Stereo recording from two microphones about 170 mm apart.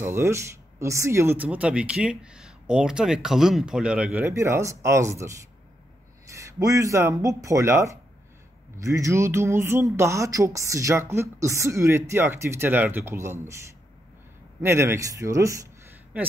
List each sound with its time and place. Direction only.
0.0 s speech: 15° right (ahead or behind)
6.3 s speech: 20° right (ahead or behind)
14.6 s speech: 15° right (ahead or behind)